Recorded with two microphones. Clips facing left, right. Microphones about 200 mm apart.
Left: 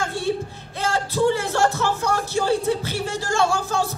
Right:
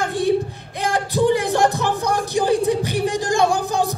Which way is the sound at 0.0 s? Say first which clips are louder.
Right 5 dB; 15° right (ahead or behind).